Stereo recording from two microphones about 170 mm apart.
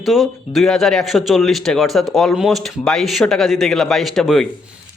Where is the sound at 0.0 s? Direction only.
Centre (ahead or behind).